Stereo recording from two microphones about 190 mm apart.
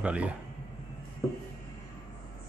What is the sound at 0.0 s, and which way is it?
Speech, 5° right (ahead or behind).